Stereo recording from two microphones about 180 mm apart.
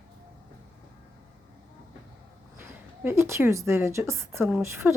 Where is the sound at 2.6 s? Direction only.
10° right (ahead or behind).